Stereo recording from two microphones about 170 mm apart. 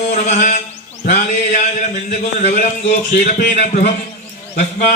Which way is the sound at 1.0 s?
50° left (ahead or behind).